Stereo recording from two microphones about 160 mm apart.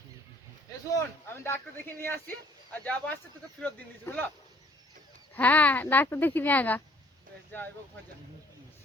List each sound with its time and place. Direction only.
0.9 s speech: 20° left (ahead or behind)
5.3 s speech: 10° left (ahead or behind)